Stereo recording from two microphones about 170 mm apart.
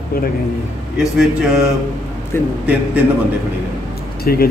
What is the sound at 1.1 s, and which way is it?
Speech, 5° right (ahead or behind).